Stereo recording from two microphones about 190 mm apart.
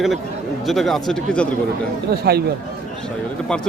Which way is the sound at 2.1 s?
55° right (ahead or behind).